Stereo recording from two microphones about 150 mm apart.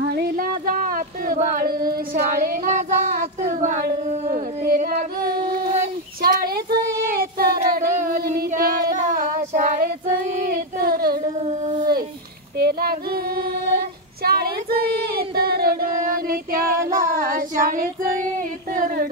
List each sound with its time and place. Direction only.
0.1 s a sound: 80° right
2.1 s a sound: 65° right (ahead or behind)
6.2 s child singing: 90° right
7.1 s child singing: 80° right
8.5 s child singing: 70° right (ahead or behind); by 9.8 s 55° right (ahead or behind)
10.4 s a sound: 80° right
12.5 s child singing: 90° right
16.7 s female singing: 20° right (ahead or behind)
17.1 s child singing: 70° right (ahead or behind)